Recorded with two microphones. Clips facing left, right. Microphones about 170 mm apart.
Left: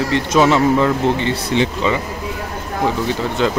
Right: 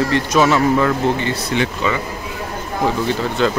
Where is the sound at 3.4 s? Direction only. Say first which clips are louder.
Even; 15° left (ahead or behind).